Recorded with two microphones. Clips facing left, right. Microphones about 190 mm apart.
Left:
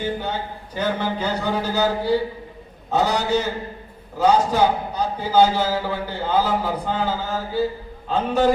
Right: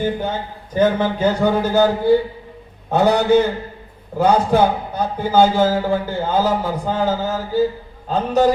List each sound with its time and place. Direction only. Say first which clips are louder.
0.7 s a man's voice: right 7 dB; 50° right (ahead or behind)